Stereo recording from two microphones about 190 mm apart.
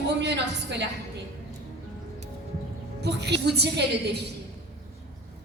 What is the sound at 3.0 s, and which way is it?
A woman's voice, 60° right (ahead or behind).